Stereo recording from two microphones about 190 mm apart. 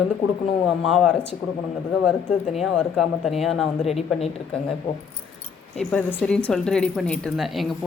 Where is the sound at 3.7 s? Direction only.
35° left (ahead or behind).